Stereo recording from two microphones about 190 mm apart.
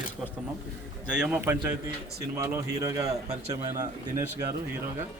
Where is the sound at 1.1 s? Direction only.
5° right (ahead or behind).